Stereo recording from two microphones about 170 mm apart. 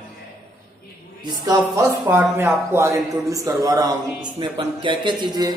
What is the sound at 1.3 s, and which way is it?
A man's voice, 20° right (ahead or behind).